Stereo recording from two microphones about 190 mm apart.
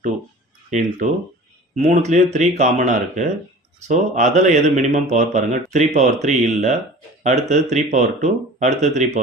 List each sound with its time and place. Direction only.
0.7 s speech: 40° right (ahead or behind)